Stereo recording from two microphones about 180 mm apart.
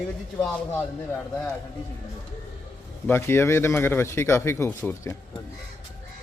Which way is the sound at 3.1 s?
15° left (ahead or behind).